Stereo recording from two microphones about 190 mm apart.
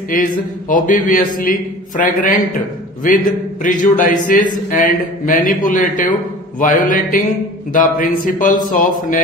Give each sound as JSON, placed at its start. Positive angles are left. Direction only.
{"t": 0.1, "sound": "a man's voice", "side_deg": 45}